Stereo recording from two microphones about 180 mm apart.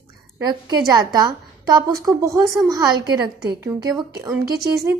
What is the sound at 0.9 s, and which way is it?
A woman's voice, 25° right (ahead or behind).